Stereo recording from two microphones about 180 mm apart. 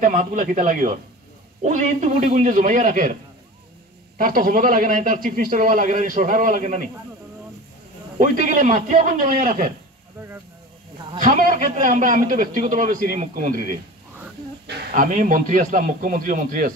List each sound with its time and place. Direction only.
0.0 s a man's voice: 45° right (ahead or behind)
4.2 s a man's voice: 50° right (ahead or behind)
8.2 s a man's voice: 45° right (ahead or behind)
11.1 s a man's voice: 50° right (ahead or behind)